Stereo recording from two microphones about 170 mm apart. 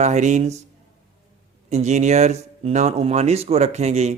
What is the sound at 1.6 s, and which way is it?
Speech, 40° right (ahead or behind).